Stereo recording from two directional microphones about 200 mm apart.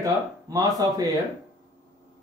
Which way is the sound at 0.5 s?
15° right (ahead or behind).